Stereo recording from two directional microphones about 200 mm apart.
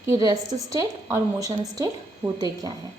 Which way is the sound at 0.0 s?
15° right (ahead or behind).